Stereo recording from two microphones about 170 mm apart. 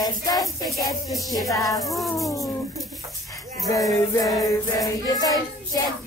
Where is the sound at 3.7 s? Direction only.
20° left (ahead or behind).